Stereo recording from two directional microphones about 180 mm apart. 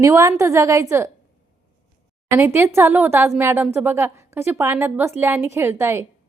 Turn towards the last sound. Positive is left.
turn(degrees=-15)  # may be behind; listen again after turning